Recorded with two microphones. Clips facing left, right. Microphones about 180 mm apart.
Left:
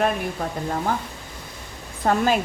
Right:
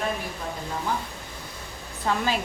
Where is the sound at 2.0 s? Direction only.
50° left (ahead or behind).